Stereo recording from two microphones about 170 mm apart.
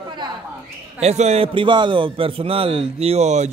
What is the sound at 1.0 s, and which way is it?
A man's voice, 40° right (ahead or behind).